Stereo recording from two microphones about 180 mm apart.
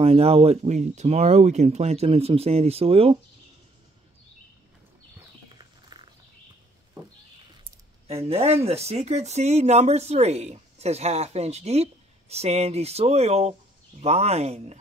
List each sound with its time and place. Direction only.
0.0 s speech: 35° right (ahead or behind)
5.6 s a sound: 25° right (ahead or behind)
8.3 s speech: 35° right (ahead or behind)